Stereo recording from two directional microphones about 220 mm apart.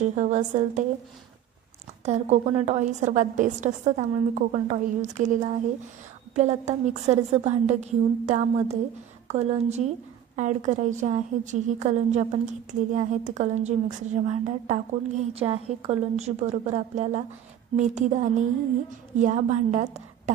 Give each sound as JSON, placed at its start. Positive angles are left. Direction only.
{"t": 0.0, "sound": "a woman's voice", "side_deg": -35}
{"t": 2.0, "sound": "a woman's voice", "side_deg": -30}